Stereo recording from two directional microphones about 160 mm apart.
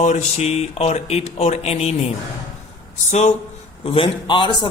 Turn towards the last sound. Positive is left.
turn(degrees=30)  # may be behind; listen again after turning